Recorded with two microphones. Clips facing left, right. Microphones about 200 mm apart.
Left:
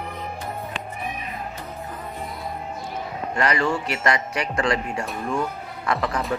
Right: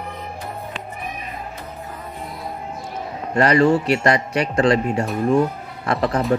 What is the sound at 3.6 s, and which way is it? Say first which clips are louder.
Speech: right 7 dB; 30° right (ahead or behind).